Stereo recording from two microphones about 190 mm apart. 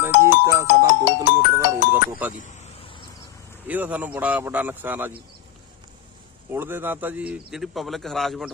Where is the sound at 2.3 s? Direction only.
40° left (ahead or behind).